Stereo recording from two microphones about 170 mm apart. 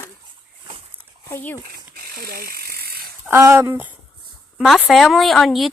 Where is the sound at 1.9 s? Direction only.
60° right (ahead or behind).